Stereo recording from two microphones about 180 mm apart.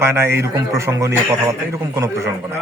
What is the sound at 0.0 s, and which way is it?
Speech, 15° right (ahead or behind).